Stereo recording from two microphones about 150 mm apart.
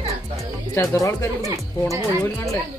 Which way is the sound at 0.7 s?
20° left (ahead or behind).